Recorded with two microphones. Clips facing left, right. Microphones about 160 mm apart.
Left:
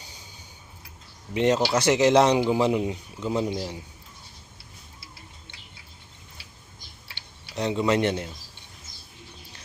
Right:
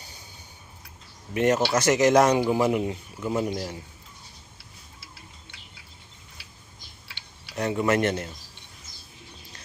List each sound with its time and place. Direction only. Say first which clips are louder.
0.0 s a sound: even; 10° left (ahead or behind)
1.3 s speech: even; 15° left (ahead or behind)
7.5 s speech: even; 15° left (ahead or behind)